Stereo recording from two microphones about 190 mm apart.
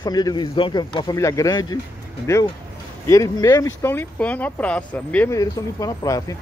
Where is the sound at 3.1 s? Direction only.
15° left (ahead or behind).